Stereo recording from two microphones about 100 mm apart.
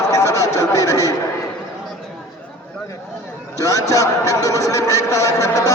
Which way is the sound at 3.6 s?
35° left (ahead or behind).